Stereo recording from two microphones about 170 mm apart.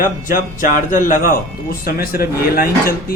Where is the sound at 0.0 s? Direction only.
55° left (ahead or behind).